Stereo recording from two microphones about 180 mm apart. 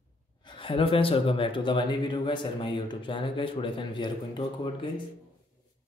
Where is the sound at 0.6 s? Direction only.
30° left (ahead or behind).